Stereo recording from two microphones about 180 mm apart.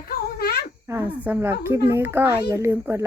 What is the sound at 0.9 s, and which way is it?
A woman's voice, 10° right (ahead or behind).